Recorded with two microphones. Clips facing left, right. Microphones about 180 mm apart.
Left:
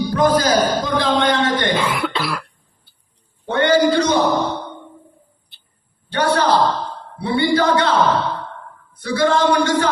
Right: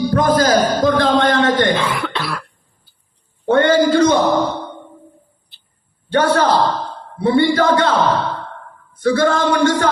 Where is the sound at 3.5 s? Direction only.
45° right (ahead or behind).